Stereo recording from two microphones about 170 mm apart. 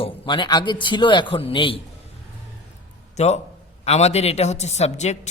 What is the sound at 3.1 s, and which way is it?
A man's voice, 40° left (ahead or behind).